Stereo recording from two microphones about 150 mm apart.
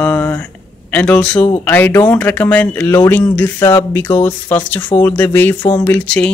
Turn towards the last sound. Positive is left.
turn(degrees=5)  # may be behind; listen again after turning